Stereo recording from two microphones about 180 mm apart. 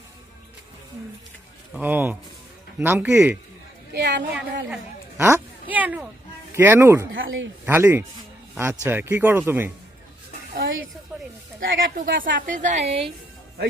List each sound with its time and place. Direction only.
1.7 s speech: 10° right (ahead or behind)
3.9 s a woman's voice: 70° right (ahead or behind)
4.7 s a sound: 5° right (ahead or behind)
5.7 s speech: 10° right (ahead or behind)
7.1 s speech: 90° right
7.6 s speech: 10° right (ahead or behind)
10.5 s music: 65° right (ahead or behind)
11.6 s speech: 85° right
12.1 s a woman's voice: 50° right (ahead or behind); by 13.1 s 35° right (ahead or behind)